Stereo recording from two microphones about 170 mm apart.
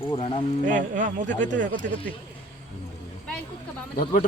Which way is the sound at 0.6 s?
50° right (ahead or behind).